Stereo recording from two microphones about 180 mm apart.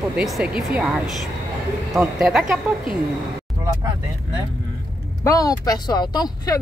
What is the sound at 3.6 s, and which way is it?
Speech, 20° right (ahead or behind).